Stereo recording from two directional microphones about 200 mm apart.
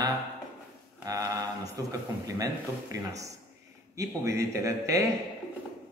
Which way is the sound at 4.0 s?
15° right (ahead or behind).